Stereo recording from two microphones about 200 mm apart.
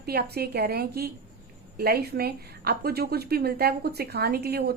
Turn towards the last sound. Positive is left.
turn(degrees=-50)  # may be behind; listen again after turning